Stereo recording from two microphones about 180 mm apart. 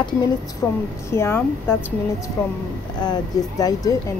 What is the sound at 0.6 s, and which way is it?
Speech, 10° left (ahead or behind).